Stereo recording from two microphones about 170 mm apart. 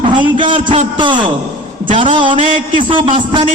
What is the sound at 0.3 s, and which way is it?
A man's voice, 30° right (ahead or behind).